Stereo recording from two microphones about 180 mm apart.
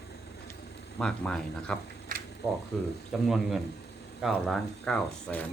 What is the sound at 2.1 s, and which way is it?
Camera, 50° right (ahead or behind).